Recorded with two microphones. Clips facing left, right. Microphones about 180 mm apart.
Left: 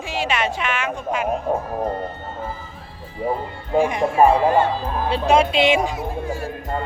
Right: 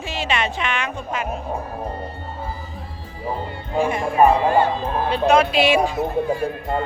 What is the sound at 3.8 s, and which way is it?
Speech, 15° left (ahead or behind).